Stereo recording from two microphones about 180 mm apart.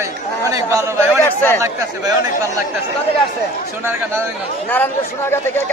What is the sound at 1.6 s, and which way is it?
Speech, 20° right (ahead or behind).